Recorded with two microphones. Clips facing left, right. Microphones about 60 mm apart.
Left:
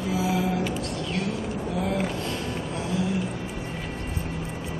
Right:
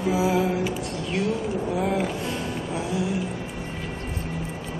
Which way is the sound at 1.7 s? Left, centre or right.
Centre.